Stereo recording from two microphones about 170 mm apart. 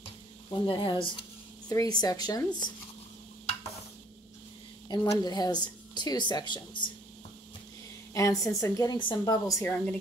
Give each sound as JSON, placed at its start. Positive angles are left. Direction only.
{"t": 0.5, "sound": "speech", "side_deg": 30}
{"t": 4.8, "sound": "speech", "side_deg": 25}
{"t": 8.1, "sound": "speech", "side_deg": 20}